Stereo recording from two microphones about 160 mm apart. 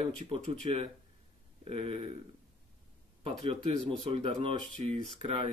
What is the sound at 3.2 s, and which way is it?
Speech, 35° right (ahead or behind).